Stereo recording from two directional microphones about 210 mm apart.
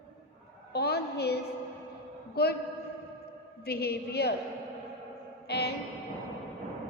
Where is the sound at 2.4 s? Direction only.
50° left (ahead or behind).